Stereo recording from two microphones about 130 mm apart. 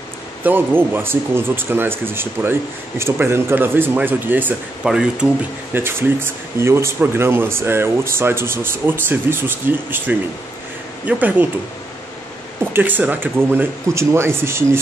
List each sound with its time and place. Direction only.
0.4 s speech: 15° right (ahead or behind)
12.7 s speech: 15° right (ahead or behind)